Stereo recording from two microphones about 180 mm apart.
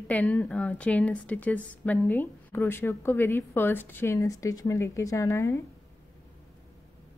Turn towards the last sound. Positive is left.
turn(degrees=15)  # may be behind; listen again after turning